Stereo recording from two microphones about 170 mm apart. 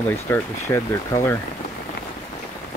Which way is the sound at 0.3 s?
15° left (ahead or behind).